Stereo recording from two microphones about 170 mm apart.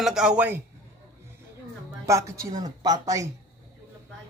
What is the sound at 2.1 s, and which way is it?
Speech, 20° right (ahead or behind).